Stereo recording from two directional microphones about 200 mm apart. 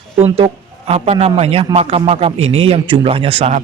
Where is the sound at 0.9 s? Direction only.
30° right (ahead or behind).